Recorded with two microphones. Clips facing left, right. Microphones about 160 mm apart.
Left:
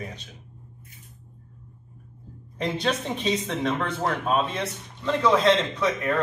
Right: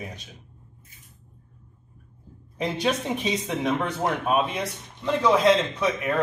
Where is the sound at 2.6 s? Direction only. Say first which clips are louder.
Right 1 dB; 10° right (ahead or behind).